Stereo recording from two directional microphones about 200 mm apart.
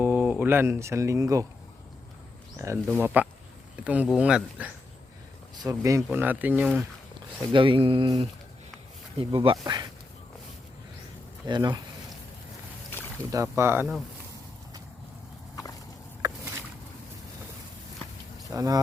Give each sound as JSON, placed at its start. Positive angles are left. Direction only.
{"t": 0.0, "sound": "speech", "side_deg": -10}
{"t": 2.6, "sound": "speech", "side_deg": -15}
{"t": 5.6, "sound": "speech", "side_deg": -15}
{"t": 7.5, "sound": "speech", "side_deg": -25}
{"t": 11.4, "sound": "speech", "side_deg": -20}
{"t": 13.3, "sound": "speech", "side_deg": -15}
{"t": 16.2, "sound": "rowboat", "side_deg": -15}
{"t": 18.5, "sound": "speech", "side_deg": -15}